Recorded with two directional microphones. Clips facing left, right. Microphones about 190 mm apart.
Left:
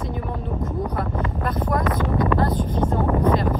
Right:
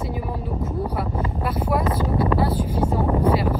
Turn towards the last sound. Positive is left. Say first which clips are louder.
# even
turn(degrees=-10)  # may be behind; listen again after turning